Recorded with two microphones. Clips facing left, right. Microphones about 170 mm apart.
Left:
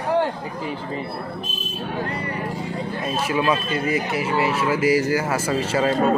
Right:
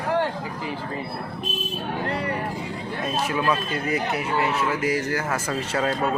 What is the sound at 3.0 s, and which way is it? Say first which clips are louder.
Speech: left 2 dB; 5° left (ahead or behind).